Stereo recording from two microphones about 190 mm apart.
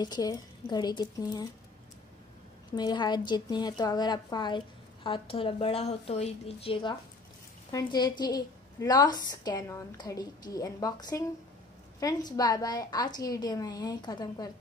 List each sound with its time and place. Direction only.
0.0 s a woman's voice: 20° left (ahead or behind)
2.7 s a woman's voice: 20° left (ahead or behind)
12.3 s a woman's voice: 20° left (ahead or behind)